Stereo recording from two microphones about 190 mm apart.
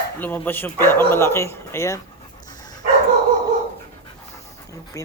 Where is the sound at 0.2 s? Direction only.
10° left (ahead or behind).